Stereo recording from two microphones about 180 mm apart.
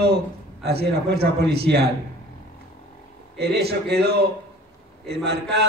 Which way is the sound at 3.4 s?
65° right (ahead or behind).